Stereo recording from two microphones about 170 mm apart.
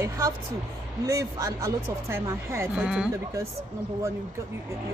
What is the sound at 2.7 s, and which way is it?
Speech, 5° right (ahead or behind).